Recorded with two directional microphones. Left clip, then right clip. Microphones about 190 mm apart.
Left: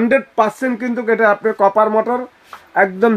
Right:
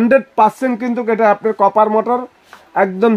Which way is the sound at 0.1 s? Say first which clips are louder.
Right 6 dB; 55° right (ahead or behind).